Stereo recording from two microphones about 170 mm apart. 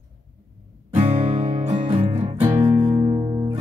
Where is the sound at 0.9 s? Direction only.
40° right (ahead or behind).